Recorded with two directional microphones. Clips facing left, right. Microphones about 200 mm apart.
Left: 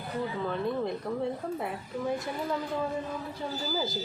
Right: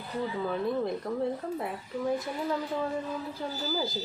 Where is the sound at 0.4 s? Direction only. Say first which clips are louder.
Right 2 dB; centre (ahead or behind).